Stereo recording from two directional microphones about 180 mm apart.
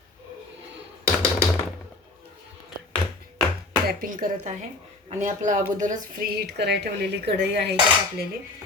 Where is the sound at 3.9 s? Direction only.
50° right (ahead or behind); by 7.7 s 70° right (ahead or behind).